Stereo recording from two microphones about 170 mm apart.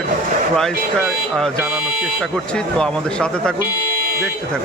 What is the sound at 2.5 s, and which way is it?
Speech, 5° left (ahead or behind).